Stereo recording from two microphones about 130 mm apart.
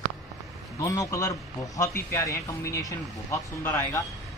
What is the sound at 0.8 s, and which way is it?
Speech, 25° left (ahead or behind).